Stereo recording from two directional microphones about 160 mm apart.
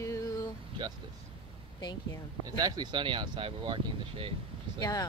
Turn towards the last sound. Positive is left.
turn(degrees=25)  # may be behind; listen again after turning